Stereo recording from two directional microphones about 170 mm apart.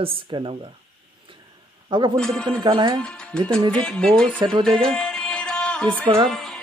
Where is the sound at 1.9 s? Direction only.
25° right (ahead or behind).